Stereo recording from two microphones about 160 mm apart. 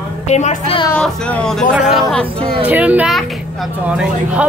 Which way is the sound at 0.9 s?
5° left (ahead or behind).